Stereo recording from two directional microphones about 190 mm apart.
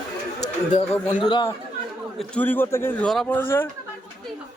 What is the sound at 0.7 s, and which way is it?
Speech, 35° left (ahead or behind).